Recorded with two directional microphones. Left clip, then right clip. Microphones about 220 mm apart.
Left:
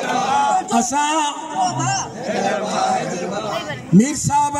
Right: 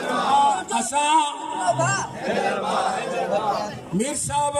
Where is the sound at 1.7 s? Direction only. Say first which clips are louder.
Even; 30° left (ahead or behind).